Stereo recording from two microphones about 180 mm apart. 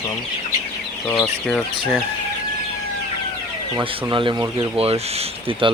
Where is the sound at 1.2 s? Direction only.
10° left (ahead or behind).